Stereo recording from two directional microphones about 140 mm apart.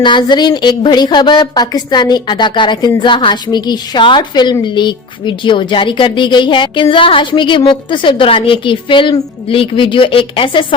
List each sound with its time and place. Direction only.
0.0 s a woman's voice: 35° left (ahead or behind)